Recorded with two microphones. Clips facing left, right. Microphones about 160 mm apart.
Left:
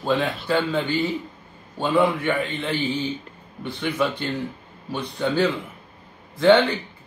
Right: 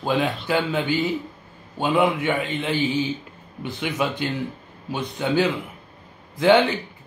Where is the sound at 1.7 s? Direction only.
15° right (ahead or behind).